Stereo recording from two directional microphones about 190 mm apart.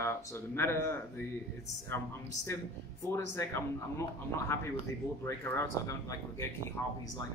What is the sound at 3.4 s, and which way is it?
Speech, 15° left (ahead or behind).